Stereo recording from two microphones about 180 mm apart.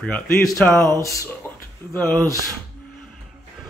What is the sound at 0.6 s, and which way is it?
Speech, 5° left (ahead or behind).